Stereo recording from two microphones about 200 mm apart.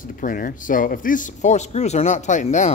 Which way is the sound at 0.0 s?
40° left (ahead or behind).